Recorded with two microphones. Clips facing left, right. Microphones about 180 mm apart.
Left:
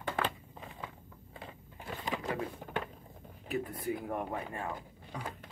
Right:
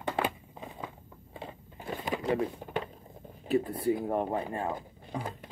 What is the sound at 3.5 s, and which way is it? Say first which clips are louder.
Speech: right 8 dB; 30° right (ahead or behind).